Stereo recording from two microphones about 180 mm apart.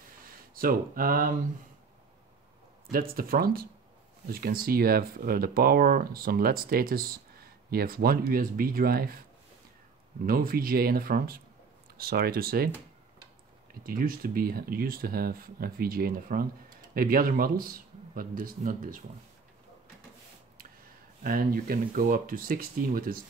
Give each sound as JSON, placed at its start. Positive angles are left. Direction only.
{"t": 0.6, "sound": "speech", "side_deg": -50}
{"t": 2.9, "sound": "speech", "side_deg": -55}
{"t": 10.2, "sound": "speech", "side_deg": -55}
{"t": 13.8, "sound": "speech", "side_deg": -55}
{"t": 21.2, "sound": "speech", "side_deg": -50}